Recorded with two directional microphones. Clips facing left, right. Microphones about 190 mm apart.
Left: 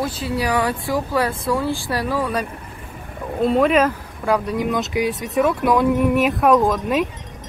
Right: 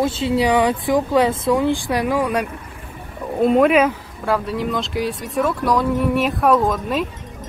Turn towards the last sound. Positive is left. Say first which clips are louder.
# left 1 dB
turn(degrees=0)  # may be behind; listen again after turning